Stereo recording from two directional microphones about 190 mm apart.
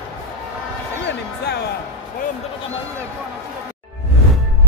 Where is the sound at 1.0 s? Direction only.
60° left (ahead or behind).